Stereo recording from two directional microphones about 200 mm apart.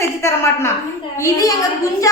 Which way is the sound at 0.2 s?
15° left (ahead or behind).